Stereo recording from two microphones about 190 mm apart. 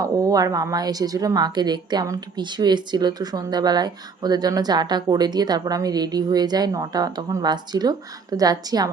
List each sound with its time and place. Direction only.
0.0 s a woman's voice: 20° right (ahead or behind)